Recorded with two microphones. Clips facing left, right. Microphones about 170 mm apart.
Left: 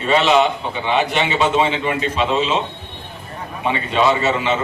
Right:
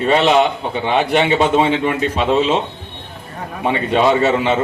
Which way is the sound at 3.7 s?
55° right (ahead or behind).